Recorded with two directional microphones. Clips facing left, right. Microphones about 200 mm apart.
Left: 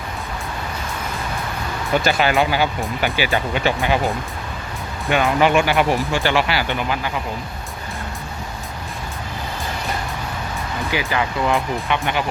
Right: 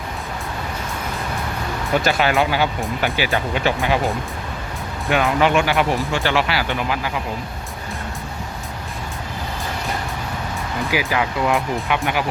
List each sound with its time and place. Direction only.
2.0 s speech: centre (ahead or behind)
10.9 s speech: 5° right (ahead or behind)